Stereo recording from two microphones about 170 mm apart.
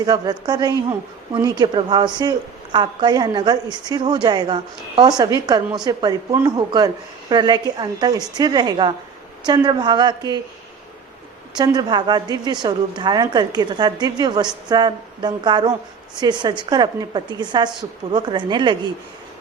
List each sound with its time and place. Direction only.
0.0 s speech: 25° right (ahead or behind)
11.5 s speech: 25° right (ahead or behind)